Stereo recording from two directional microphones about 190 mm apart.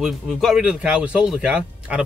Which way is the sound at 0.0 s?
Centre (ahead or behind).